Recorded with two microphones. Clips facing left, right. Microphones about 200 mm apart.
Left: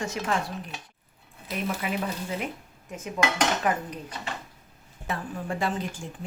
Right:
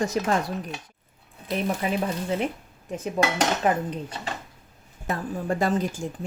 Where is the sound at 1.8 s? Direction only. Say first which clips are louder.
Right 4 dB; 30° right (ahead or behind).